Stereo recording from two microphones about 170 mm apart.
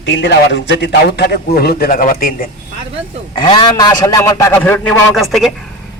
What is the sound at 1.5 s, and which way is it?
Speech, 65° left (ahead or behind).